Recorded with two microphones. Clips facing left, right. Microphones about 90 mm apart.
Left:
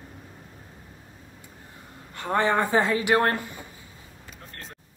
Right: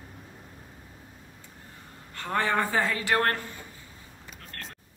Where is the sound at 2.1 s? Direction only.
20° left (ahead or behind).